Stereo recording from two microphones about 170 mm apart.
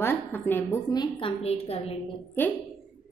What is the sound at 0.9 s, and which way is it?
A woman's voice, 30° left (ahead or behind).